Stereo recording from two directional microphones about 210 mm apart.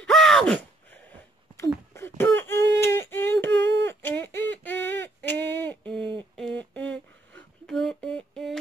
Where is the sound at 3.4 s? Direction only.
55° right (ahead or behind).